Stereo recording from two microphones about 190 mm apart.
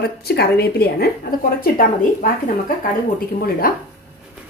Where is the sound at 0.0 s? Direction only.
55° left (ahead or behind).